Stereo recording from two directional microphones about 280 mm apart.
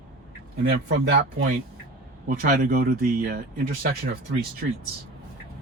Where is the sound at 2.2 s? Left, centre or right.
Right.